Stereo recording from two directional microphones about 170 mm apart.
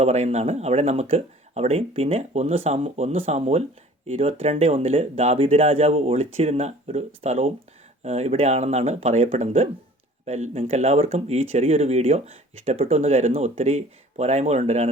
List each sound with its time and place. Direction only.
0.0 s speech: 40° right (ahead or behind)